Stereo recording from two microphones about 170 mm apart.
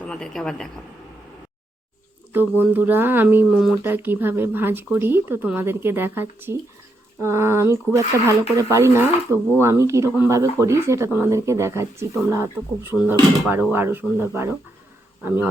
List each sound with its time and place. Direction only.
0.0 s speech: 5° left (ahead or behind)
2.3 s speech: 10° right (ahead or behind)